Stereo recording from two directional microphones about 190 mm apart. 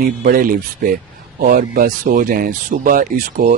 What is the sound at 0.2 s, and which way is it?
Speech, 50° right (ahead or behind).